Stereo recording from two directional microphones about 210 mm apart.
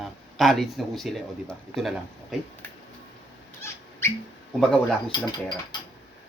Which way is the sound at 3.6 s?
10° left (ahead or behind).